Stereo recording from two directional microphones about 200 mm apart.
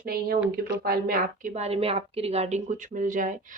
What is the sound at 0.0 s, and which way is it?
A woman's voice, 50° right (ahead or behind).